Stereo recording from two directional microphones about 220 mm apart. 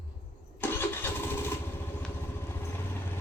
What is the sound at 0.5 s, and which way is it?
Engine starting, 10° left (ahead or behind).